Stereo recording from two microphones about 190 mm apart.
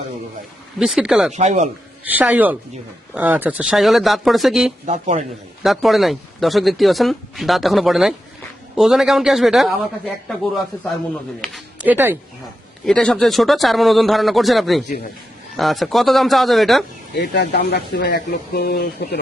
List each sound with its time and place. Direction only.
0.8 s speech: 5° right (ahead or behind)
1.3 s speech: 35° right (ahead or behind)
2.0 s speech: 10° right (ahead or behind)
4.9 s speech: 40° right (ahead or behind)
5.6 s speech: centre (ahead or behind)
11.3 s speech: 5° left (ahead or behind)
11.8 s speech: 10° right (ahead or behind)
12.8 s speech: 5° left (ahead or behind)
17.2 s speech: 60° left (ahead or behind)